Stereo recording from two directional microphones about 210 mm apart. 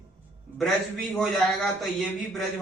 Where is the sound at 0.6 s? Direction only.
Centre (ahead or behind).